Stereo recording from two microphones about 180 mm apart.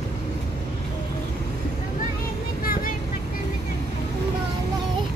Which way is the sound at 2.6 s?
55° left (ahead or behind).